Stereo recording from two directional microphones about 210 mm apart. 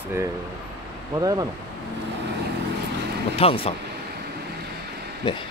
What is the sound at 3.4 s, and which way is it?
Speech, 25° left (ahead or behind).